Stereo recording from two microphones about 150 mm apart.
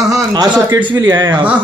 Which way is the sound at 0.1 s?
25° right (ahead or behind).